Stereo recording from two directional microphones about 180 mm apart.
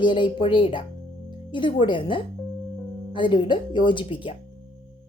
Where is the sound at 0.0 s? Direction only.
25° left (ahead or behind).